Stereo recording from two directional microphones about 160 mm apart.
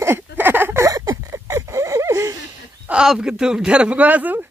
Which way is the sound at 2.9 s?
5° right (ahead or behind).